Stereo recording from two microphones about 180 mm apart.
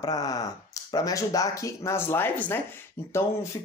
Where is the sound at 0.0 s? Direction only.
20° left (ahead or behind).